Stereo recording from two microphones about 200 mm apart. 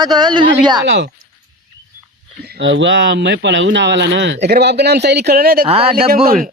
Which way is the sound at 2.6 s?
65° right (ahead or behind).